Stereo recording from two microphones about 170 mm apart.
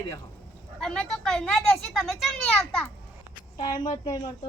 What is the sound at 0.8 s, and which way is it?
Speech, 5° left (ahead or behind).